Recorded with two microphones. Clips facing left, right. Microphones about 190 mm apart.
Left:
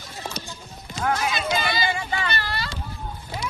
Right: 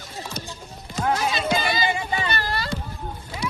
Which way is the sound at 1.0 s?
35° right (ahead or behind).